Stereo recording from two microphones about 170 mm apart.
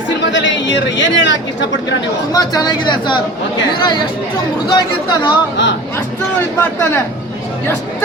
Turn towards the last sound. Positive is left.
turn(degrees=10)  # may be behind; listen again after turning